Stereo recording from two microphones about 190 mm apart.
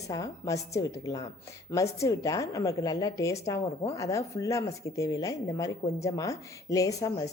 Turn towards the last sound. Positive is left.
turn(degrees=15)  # may be behind; listen again after turning